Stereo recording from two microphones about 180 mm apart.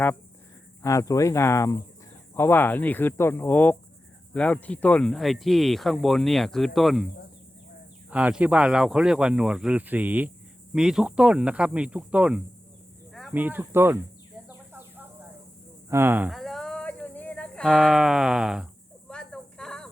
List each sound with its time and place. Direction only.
0.8 s cricket: 15° left (ahead or behind)
4.4 s speech: 10° left (ahead or behind)
8.1 s speech: 5° right (ahead or behind)
14.4 s bird: 10° right (ahead or behind)
15.9 s speech: 10° right (ahead or behind)
16.3 s a sound: centre (ahead or behind)